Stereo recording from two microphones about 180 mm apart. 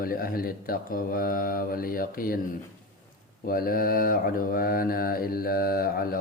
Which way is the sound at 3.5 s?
50° left (ahead or behind).